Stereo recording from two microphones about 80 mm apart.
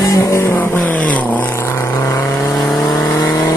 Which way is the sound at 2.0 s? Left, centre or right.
Left.